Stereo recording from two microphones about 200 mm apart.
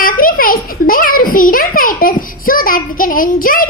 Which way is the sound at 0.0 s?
45° left (ahead or behind).